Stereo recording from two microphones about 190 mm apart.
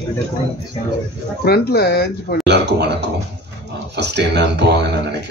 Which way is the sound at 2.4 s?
65° right (ahead or behind).